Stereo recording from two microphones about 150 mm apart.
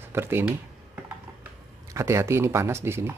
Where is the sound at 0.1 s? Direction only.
15° right (ahead or behind).